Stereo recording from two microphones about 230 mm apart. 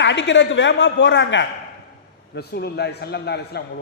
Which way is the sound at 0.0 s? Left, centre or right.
Left.